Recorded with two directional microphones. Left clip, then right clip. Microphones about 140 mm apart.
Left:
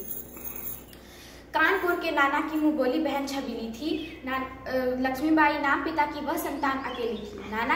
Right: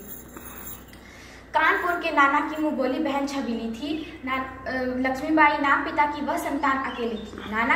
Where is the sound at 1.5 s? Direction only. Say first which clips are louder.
Right 2 dB; 35° left (ahead or behind).